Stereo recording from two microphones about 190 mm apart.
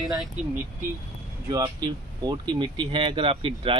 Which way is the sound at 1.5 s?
20° right (ahead or behind).